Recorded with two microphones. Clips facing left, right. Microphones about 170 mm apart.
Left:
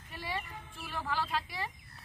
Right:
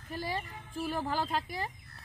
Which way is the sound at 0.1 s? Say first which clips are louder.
Right 3 dB; 40° right (ahead or behind).